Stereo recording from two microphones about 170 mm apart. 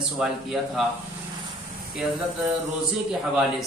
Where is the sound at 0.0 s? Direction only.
Centre (ahead or behind).